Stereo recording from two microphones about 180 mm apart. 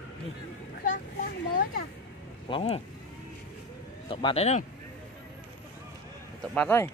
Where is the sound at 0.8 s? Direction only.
45° left (ahead or behind).